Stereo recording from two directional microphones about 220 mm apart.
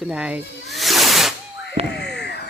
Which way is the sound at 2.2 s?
50° left (ahead or behind).